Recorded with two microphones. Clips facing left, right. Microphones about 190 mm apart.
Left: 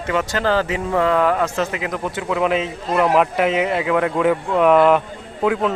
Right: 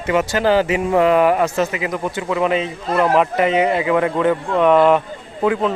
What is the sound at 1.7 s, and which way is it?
Speech, centre (ahead or behind).